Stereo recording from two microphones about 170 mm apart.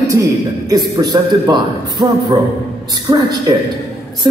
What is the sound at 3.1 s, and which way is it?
Speech, 20° right (ahead or behind).